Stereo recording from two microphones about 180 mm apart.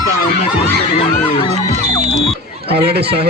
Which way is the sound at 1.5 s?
35° right (ahead or behind).